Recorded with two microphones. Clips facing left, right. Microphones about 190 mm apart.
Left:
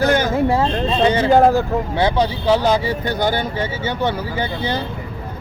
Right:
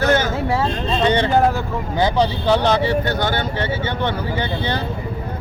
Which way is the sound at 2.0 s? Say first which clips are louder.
Right 2 dB; 5° left (ahead or behind).